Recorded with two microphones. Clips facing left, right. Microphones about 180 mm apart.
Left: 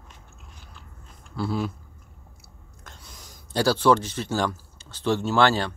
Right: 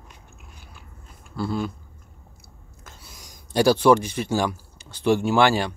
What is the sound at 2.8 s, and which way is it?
Speech, 5° right (ahead or behind).